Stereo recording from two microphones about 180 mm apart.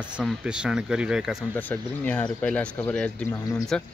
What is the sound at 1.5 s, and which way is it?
Speech, 10° left (ahead or behind).